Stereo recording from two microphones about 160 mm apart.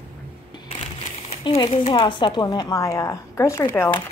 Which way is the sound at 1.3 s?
35° left (ahead or behind).